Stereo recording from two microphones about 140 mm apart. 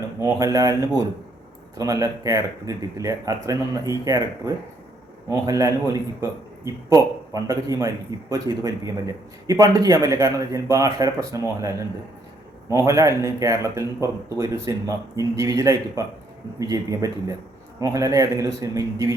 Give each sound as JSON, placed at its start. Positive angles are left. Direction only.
{"t": 0.2, "sound": "a man's voice", "side_deg": -25}